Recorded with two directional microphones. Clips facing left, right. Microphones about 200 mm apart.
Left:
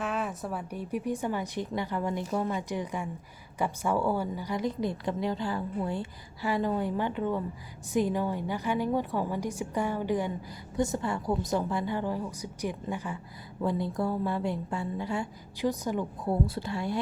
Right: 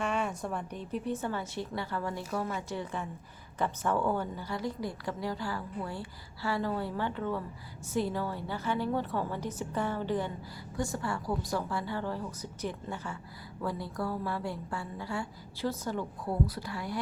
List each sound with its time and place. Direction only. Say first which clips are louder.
0.0 s a woman's voice: even; centre (ahead or behind); by 17.0 s 25° left (ahead or behind)